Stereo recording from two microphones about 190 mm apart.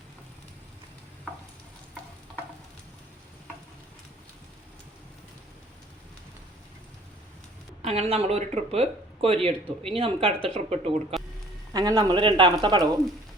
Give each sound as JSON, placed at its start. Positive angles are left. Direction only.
{"t": 7.8, "sound": "speech", "side_deg": -35}
{"t": 11.7, "sound": "speech", "side_deg": -20}